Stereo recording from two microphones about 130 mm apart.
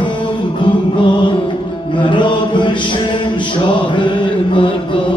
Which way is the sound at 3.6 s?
35° left (ahead or behind).